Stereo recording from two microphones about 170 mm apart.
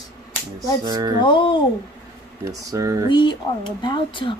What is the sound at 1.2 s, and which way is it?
Speech, 30° left (ahead or behind).